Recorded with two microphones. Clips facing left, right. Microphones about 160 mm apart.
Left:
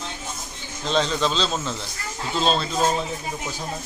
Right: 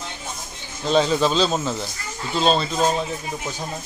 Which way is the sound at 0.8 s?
10° right (ahead or behind).